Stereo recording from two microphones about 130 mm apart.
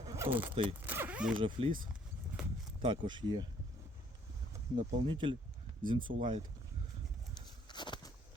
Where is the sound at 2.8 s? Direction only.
40° right (ahead or behind).